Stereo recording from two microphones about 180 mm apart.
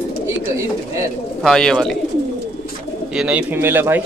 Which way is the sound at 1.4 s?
5° left (ahead or behind).